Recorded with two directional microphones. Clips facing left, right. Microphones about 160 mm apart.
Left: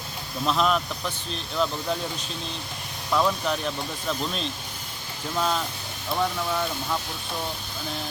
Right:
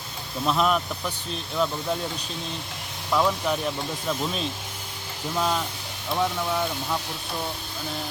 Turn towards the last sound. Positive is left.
turn(degrees=-5)  # may be behind; listen again after turning